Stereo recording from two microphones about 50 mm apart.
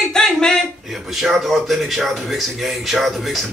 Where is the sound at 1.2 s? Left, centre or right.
Centre.